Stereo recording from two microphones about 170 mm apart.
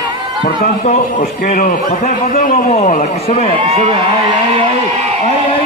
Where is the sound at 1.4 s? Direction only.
50° left (ahead or behind).